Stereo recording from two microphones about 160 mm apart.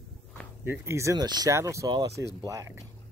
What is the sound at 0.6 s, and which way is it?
Speech, 15° right (ahead or behind).